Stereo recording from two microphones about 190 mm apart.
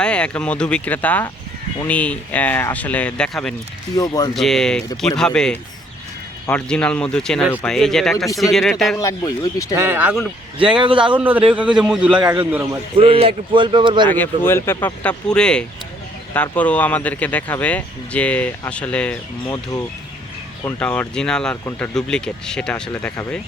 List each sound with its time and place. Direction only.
0.0 s speech: 5° left (ahead or behind)
3.9 s speech: 20° left (ahead or behind)
4.4 s speech: centre (ahead or behind)
9.0 s speech: 20° left (ahead or behind)
9.8 s a man's voice: 10° right (ahead or behind)
10.8 s a man's voice: 25° right (ahead or behind)
11.2 s a man's voice: 10° right (ahead or behind)
13.0 s a man's voice: 30° right (ahead or behind)
14.1 s speech: 10° left (ahead or behind)
20.7 s speech: 10° left (ahead or behind)